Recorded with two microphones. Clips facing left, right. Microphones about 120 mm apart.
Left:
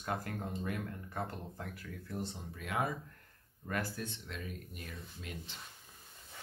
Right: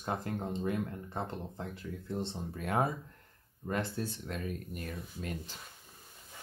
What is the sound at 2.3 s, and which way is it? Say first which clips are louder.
Speech: right 6 dB; 40° right (ahead or behind).